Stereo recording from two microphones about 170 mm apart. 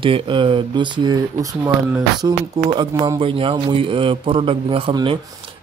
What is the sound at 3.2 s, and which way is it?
A man's voice, 30° right (ahead or behind).